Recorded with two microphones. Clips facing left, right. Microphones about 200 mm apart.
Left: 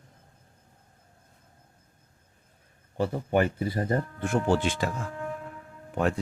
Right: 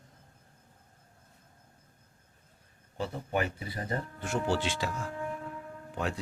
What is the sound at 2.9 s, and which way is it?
Speech, 55° left (ahead or behind).